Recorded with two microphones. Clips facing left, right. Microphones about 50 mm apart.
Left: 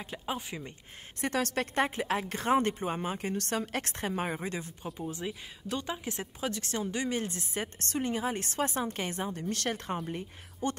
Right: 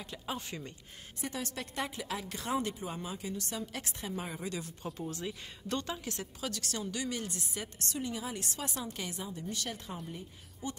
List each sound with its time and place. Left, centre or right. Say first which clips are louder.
0.0 s speech: left 3 dB; centre
1.2 s a woman's voice: left 8 dB; left
1.8 s a woman's voice: left 7 dB; left
4.4 s a woman's voice: left 2 dB; left
4.9 s a woman's voice: left 4 dB; centre; by 10.8 s left